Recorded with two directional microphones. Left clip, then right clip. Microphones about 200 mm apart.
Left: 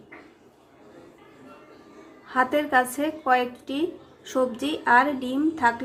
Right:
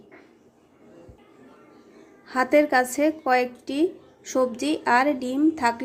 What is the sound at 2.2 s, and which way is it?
A woman's voice, 25° right (ahead or behind).